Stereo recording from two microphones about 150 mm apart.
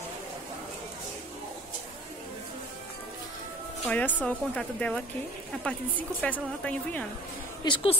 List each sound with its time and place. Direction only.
3.8 s speech: 10° left (ahead or behind)
6.2 s speech: 10° left (ahead or behind)
7.6 s a woman's voice: 35° left (ahead or behind)